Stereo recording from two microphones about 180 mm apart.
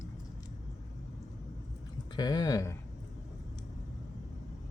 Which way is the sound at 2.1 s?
25° left (ahead or behind).